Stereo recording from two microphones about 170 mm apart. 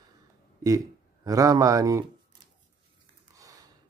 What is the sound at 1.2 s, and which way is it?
Speech, 20° right (ahead or behind).